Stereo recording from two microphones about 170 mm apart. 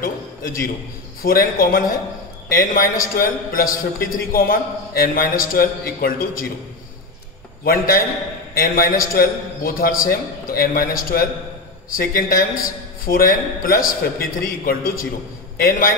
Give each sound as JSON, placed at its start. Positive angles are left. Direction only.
{"t": 0.0, "sound": "a man's voice", "side_deg": 55}
{"t": 7.6, "sound": "a man's voice", "side_deg": 60}